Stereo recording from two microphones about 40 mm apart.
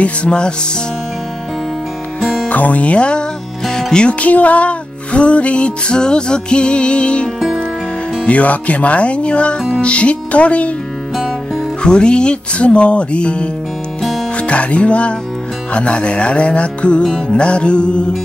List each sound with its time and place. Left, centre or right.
0.0 s music: left
2.4 s speech: left
4.1 s music: left
8.3 s speech: left
11.8 s music: left
17.0 s music: centre
17.4 s music: left